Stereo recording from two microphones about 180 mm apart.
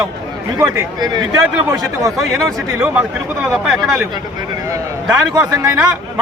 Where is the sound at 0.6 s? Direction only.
25° right (ahead or behind).